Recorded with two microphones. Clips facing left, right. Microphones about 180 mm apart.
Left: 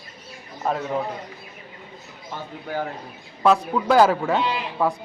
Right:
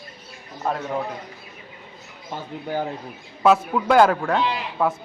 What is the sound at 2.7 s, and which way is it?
Speech, 20° right (ahead or behind).